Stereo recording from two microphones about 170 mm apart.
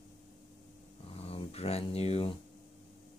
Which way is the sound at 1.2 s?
35° left (ahead or behind).